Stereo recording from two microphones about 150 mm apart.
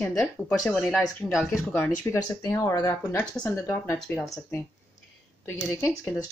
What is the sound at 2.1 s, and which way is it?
Speech, 20° left (ahead or behind).